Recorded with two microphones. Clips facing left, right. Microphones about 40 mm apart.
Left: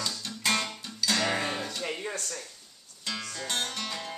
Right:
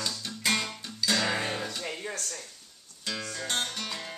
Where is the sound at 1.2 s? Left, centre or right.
Centre.